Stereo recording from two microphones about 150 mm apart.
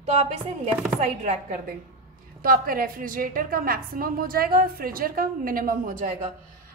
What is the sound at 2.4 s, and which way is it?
A woman's voice, 75° right (ahead or behind).